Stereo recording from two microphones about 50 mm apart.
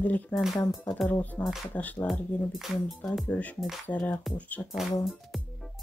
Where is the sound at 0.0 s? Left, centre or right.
Left.